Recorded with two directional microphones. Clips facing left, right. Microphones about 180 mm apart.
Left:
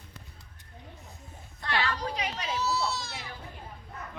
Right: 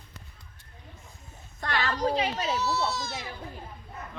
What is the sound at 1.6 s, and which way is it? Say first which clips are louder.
Speech: right 3 dB; 45° right (ahead or behind).